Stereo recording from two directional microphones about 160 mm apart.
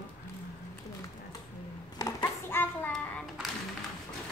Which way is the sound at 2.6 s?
10° left (ahead or behind).